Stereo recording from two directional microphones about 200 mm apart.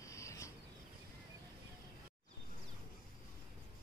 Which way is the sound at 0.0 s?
15° left (ahead or behind).